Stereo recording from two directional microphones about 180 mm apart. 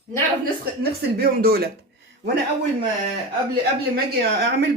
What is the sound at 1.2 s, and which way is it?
Speech, 60° right (ahead or behind).